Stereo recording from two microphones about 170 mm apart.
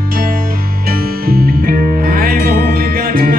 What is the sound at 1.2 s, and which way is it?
Music, 60° right (ahead or behind).